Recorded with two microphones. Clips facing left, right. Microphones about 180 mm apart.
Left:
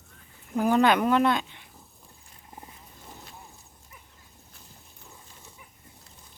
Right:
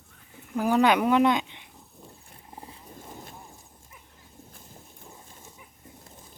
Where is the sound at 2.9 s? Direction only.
50° right (ahead or behind).